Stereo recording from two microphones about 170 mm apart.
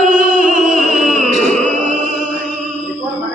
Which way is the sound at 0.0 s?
50° right (ahead or behind).